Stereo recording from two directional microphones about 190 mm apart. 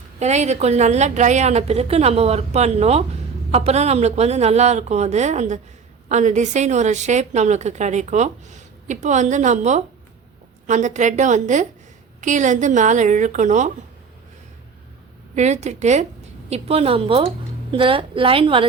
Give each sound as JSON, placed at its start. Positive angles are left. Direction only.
{"t": 0.2, "sound": "a woman's voice", "side_deg": -35}
{"t": 15.4, "sound": "a woman's voice", "side_deg": -35}